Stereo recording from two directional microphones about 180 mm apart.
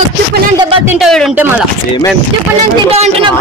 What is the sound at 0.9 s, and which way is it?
Music, centre (ahead or behind).